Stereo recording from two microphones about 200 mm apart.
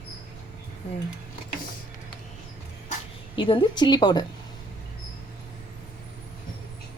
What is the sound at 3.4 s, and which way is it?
Speech, 25° left (ahead or behind).